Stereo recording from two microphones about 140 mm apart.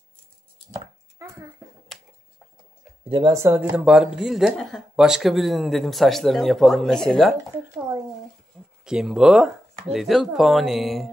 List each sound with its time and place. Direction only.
0.7 s a sound: 20° right (ahead or behind)
3.1 s speech: 30° right (ahead or behind); by 7.3 s centre (ahead or behind)
8.8 s speech: 5° right (ahead or behind)